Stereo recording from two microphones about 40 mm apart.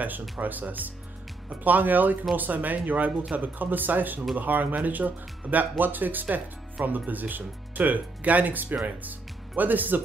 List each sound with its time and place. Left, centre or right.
0.0 s speech: right